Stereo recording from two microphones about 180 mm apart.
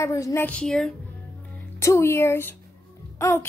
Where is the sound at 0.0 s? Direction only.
15° left (ahead or behind).